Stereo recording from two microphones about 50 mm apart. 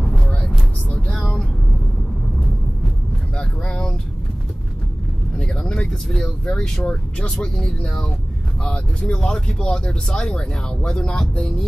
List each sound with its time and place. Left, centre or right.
0.2 s vehicle: left
1.1 s vehicle: centre
3.3 s vehicle: left
5.4 s vehicle: centre
6.0 s a sound: centre
6.5 s speech: centre